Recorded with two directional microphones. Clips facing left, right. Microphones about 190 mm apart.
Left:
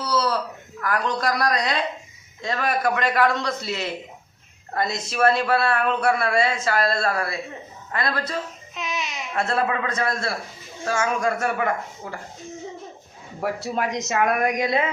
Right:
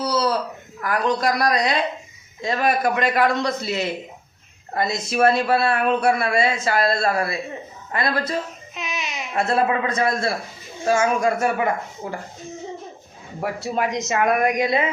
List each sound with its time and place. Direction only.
0.0 s a sound: 15° right (ahead or behind)
0.8 s speech: 15° right (ahead or behind)
8.7 s babbling: centre (ahead or behind)
9.3 s speech: 15° right (ahead or behind)
13.4 s speech: centre (ahead or behind)